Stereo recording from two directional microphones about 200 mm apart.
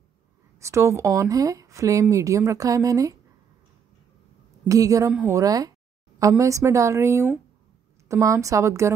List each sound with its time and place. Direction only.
0.6 s speech: 15° right (ahead or behind)
4.6 s a woman's voice: 15° right (ahead or behind)